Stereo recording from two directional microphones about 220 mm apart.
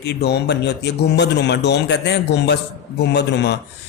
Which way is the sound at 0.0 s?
50° left (ahead or behind).